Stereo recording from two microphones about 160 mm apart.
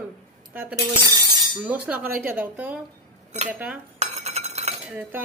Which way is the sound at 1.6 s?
10° right (ahead or behind).